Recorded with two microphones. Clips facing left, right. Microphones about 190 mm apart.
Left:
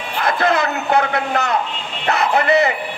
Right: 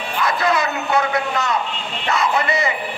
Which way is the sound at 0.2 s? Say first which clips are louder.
Left 2 dB; 55° left (ahead or behind).